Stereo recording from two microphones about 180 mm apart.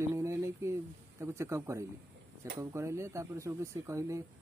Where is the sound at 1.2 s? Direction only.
15° right (ahead or behind).